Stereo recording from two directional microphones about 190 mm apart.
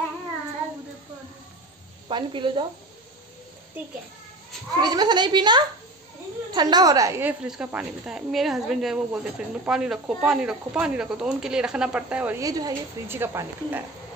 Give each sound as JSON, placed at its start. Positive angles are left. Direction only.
{"t": 2.0, "sound": "a woman's voice", "side_deg": -25}
{"t": 4.7, "sound": "a woman's voice", "side_deg": -20}